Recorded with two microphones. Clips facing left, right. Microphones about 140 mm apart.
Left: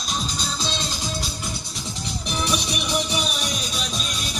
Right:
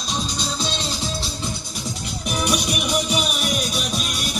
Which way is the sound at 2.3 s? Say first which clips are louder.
Right 3 dB; 10° right (ahead or behind).